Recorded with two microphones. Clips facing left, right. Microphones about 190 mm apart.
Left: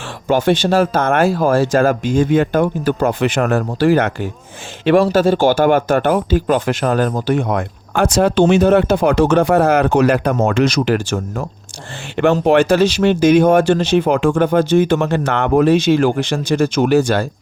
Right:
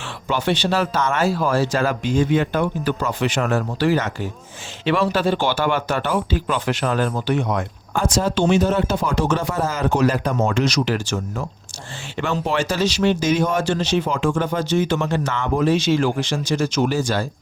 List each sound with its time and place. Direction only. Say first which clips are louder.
0.3 s speech: left 7 dB; 45° left (ahead or behind)
5.0 s speech: left 7 dB; 45° left (ahead or behind); by 17.2 s 65° left (ahead or behind)